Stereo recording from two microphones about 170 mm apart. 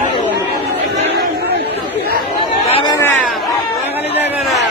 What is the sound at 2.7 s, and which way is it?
Chatter, 35° left (ahead or behind).